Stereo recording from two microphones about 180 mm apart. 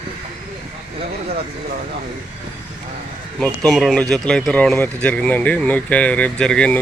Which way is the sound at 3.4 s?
Centre (ahead or behind).